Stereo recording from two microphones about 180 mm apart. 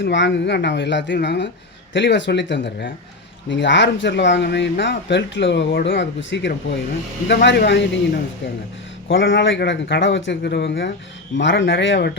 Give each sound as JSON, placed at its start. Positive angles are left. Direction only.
{"t": 0.0, "sound": "speech", "side_deg": 85}
{"t": 1.9, "sound": "speech", "side_deg": 90}
{"t": 7.3, "sound": "speech", "side_deg": 70}
{"t": 9.0, "sound": "speech", "side_deg": 90}